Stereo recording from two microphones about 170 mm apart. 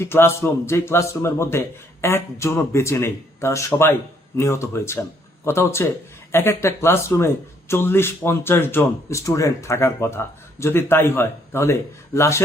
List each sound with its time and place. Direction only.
0.0 s speech: 15° left (ahead or behind)